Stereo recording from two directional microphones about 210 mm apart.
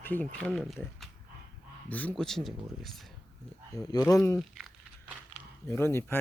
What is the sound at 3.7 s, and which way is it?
Speech, 15° left (ahead or behind).